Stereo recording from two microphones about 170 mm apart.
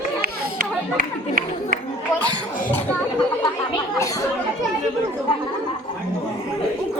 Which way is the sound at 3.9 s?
20° left (ahead or behind).